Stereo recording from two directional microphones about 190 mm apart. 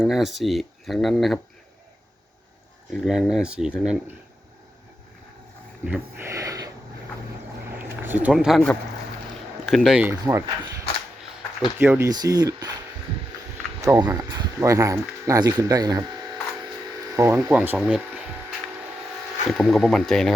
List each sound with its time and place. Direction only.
0.0 s speech: centre (ahead or behind)
2.9 s speech: centre (ahead or behind)
5.8 s speech: 10° right (ahead or behind)
7.8 s a sound: 10° right (ahead or behind)
9.6 s speech: centre (ahead or behind); by 10.7 s 20° right (ahead or behind)
11.8 s speech: 15° right (ahead or behind)
13.8 s speech: 15° right (ahead or behind)
17.2 s speech: 15° right (ahead or behind)
19.5 s speech: centre (ahead or behind)